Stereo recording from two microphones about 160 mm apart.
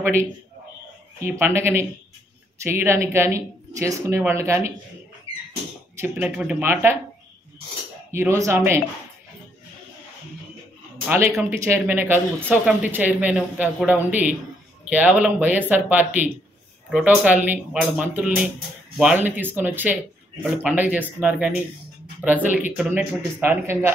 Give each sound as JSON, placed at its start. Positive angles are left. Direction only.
{"t": 0.0, "sound": "speech", "side_deg": -15}
{"t": 5.9, "sound": "speech", "side_deg": -10}
{"t": 8.1, "sound": "speech", "side_deg": -15}
{"t": 11.1, "sound": "a man's voice", "side_deg": -15}